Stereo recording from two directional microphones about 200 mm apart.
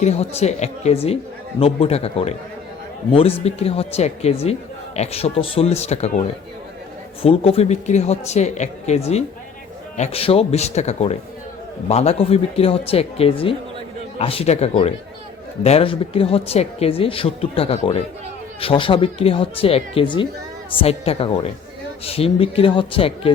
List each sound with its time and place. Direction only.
0.0 s a man's voice: 35° left (ahead or behind)